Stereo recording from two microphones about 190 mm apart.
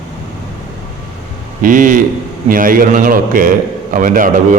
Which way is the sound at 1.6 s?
45° right (ahead or behind).